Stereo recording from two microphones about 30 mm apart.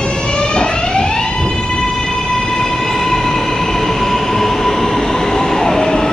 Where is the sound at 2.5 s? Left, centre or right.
Centre.